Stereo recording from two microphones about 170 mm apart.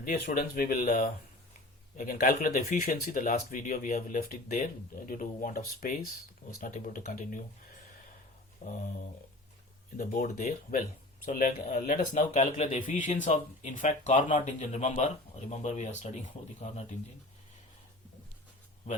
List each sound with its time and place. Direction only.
0.0 s speech: 55° left (ahead or behind)
8.6 s speech: 50° left (ahead or behind)
10.0 s speech: 60° left (ahead or behind); by 16.8 s 45° left (ahead or behind)